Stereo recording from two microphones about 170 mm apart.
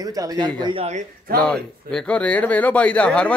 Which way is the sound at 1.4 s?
5° left (ahead or behind).